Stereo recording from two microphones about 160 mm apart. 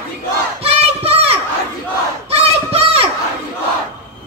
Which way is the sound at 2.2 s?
40° right (ahead or behind).